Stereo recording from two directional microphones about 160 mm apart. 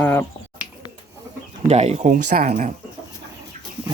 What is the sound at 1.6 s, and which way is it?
Speech, 40° right (ahead or behind).